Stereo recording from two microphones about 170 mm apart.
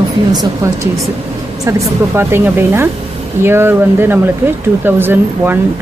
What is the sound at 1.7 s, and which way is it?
Speech, 15° right (ahead or behind).